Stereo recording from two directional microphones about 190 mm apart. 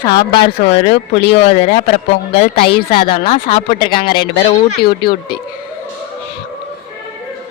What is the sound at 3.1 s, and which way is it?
Speech, 30° left (ahead or behind).